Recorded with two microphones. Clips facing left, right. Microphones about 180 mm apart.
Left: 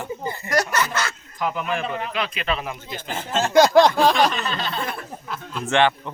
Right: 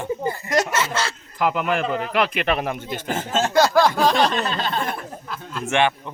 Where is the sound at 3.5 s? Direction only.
20° left (ahead or behind).